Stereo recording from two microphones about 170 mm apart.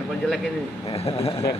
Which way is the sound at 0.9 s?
35° left (ahead or behind).